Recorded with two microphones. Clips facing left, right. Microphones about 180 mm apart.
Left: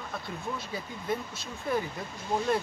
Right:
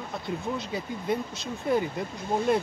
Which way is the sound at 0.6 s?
20° right (ahead or behind).